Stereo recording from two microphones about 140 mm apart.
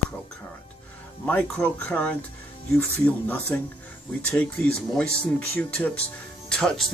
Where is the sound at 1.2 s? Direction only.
10° left (ahead or behind).